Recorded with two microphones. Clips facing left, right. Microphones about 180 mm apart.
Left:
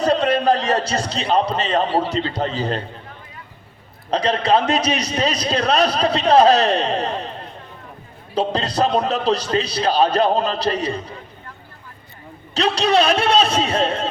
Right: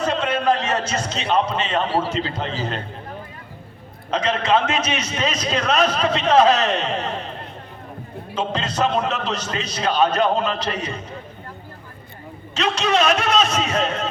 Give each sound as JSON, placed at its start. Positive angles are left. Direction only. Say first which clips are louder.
{"t": 0.0, "sound": "a man's voice", "louder": "left 4 dB", "side_deg": 35}
{"t": 4.1, "sound": "a man's voice", "louder": "left 2 dB", "side_deg": 35}
{"t": 8.4, "sound": "a man's voice", "louder": "left 3 dB", "side_deg": 35}
{"t": 12.5, "sound": "a man's voice", "louder": "left 3 dB", "side_deg": 35}